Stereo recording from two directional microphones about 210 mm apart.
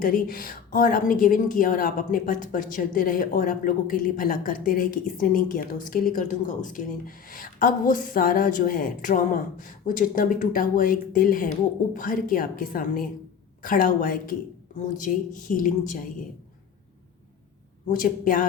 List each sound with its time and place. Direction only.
0.0 s a woman's voice: 40° left (ahead or behind)
17.8 s a woman's voice: 40° left (ahead or behind)